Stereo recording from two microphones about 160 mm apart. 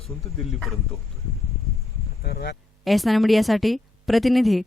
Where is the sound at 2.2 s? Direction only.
80° left.